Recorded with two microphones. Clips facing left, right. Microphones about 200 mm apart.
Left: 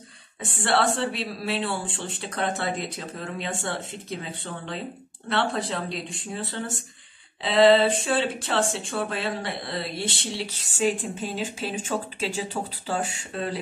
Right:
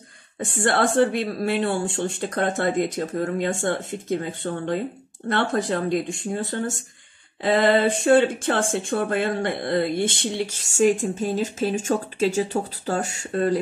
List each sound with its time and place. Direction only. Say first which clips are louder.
0.4 s speech: right 3 dB; 45° right (ahead or behind)